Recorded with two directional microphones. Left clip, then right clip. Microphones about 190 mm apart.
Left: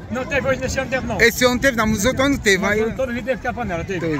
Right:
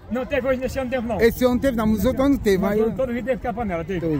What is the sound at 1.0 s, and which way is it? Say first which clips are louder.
Speech: left 3 dB; 15° right (ahead or behind).